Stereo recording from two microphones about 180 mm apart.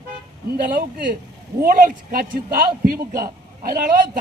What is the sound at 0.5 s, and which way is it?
A man's voice, 55° right (ahead or behind).